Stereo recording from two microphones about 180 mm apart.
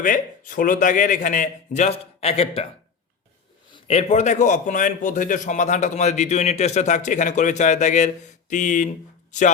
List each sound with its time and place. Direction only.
0.0 s a man's voice: 50° left (ahead or behind); by 2.6 s 35° left (ahead or behind)
3.7 s a man's voice: 35° left (ahead or behind)